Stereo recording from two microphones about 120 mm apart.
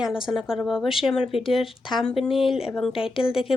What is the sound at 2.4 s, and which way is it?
Speech, 50° left (ahead or behind).